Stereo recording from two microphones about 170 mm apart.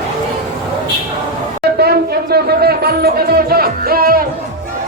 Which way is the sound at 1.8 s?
70° right (ahead or behind).